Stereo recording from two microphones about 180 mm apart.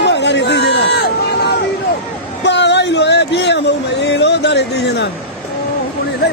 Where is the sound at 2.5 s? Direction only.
75° left (ahead or behind).